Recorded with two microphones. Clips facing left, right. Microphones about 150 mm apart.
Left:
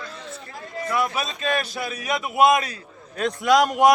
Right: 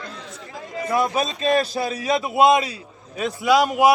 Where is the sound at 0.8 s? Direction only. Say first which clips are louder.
Right 4 dB; 30° right (ahead or behind).